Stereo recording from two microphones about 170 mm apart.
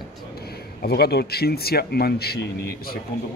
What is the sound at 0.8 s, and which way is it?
Speech, 70° left (ahead or behind).